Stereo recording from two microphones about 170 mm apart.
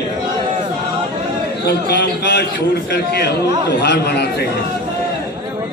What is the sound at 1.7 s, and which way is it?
Speech, 70° left (ahead or behind).